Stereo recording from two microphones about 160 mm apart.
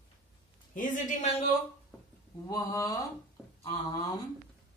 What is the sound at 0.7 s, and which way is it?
Speech, 55° left (ahead or behind).